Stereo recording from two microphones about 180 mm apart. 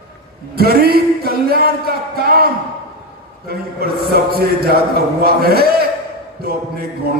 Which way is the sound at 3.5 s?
60° right (ahead or behind).